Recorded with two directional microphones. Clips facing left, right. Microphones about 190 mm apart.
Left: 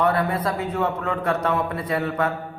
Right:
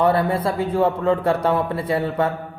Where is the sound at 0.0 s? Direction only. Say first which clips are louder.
Right 3 dB; 30° right (ahead or behind).